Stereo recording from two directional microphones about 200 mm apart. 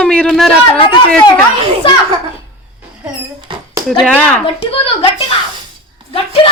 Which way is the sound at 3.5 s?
25° right (ahead or behind).